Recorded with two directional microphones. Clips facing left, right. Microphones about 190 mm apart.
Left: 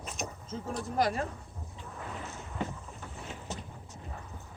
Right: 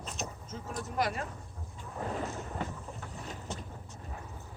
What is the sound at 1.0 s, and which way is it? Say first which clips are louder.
Speech: left 3 dB; 35° left (ahead or behind).